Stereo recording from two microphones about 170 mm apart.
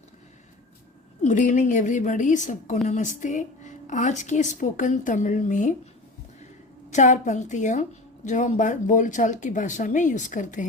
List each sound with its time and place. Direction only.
1.2 s a woman's voice: 45° left (ahead or behind)
6.9 s a woman's voice: 45° left (ahead or behind)